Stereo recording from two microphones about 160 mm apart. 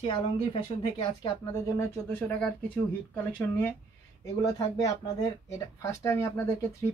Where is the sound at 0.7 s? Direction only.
35° left (ahead or behind).